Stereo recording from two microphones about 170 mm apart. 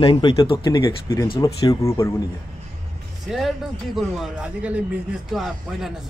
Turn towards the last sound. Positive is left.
turn(degrees=0)  # may be behind; listen again after turning